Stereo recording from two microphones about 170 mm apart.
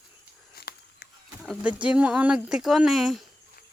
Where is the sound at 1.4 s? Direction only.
5° right (ahead or behind).